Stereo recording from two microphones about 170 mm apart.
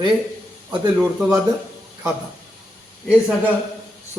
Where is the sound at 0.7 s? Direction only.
10° right (ahead or behind).